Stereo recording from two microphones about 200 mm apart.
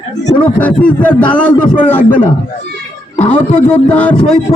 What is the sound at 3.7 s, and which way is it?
Speech, 10° left (ahead or behind).